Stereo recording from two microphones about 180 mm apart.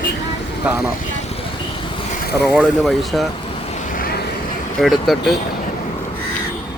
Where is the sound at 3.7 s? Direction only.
45° left (ahead or behind).